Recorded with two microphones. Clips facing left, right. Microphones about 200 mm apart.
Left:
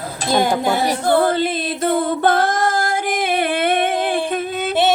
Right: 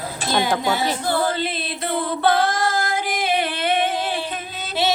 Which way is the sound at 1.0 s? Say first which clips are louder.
Left 6 dB; 55° left (ahead or behind).